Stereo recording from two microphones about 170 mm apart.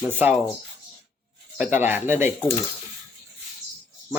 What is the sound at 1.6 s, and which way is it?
Speech, 10° right (ahead or behind).